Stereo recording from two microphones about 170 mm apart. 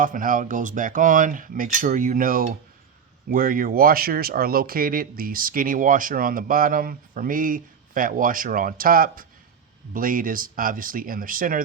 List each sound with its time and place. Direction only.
0.0 s speech: 50° right (ahead or behind)